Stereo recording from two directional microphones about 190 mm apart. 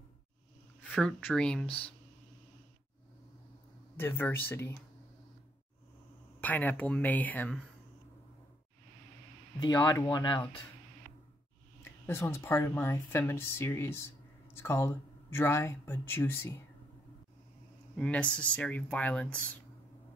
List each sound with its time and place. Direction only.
0.8 s speech: 5° left (ahead or behind)
3.9 s speech: 10° left (ahead or behind)
6.4 s speech: 10° left (ahead or behind)
9.6 s speech: 20° left (ahead or behind)
11.8 s speech: 10° left (ahead or behind)
17.9 s speech: 5° left (ahead or behind)